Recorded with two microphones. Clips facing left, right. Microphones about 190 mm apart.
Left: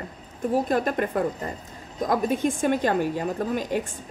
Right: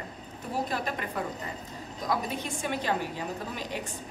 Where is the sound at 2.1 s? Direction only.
50° left (ahead or behind).